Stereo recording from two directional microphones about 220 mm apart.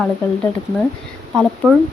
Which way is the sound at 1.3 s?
5° right (ahead or behind).